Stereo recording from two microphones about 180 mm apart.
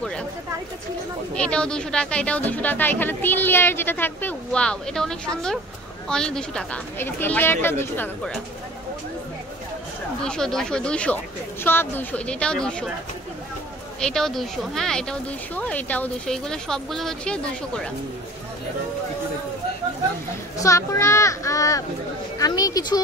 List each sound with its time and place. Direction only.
0.0 s a sound: 5° left (ahead or behind)
1.3 s speech: 5° left (ahead or behind)
10.2 s speech: 5° left (ahead or behind)
13.9 s speech: 5° left (ahead or behind)
20.5 s a woman's voice: 15° left (ahead or behind)